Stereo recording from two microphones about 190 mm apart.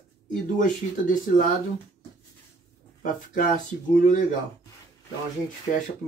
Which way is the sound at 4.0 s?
40° left (ahead or behind).